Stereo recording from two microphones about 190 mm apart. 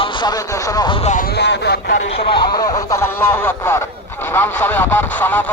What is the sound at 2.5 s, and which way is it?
Speech, 20° left (ahead or behind).